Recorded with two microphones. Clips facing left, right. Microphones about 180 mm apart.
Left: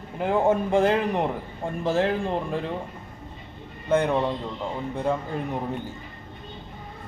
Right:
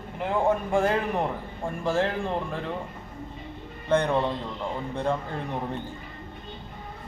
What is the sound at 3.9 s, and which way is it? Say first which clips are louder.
A man's voice: left 1 dB; 5° left (ahead or behind).